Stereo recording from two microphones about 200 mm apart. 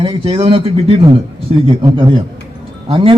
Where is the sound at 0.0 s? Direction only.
25° right (ahead or behind).